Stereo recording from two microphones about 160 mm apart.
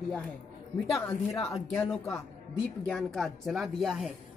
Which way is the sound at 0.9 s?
20° left (ahead or behind).